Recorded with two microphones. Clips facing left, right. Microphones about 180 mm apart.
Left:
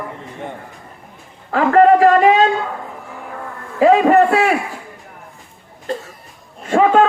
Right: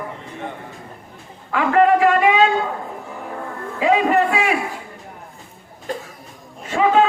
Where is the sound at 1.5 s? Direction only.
40° left (ahead or behind).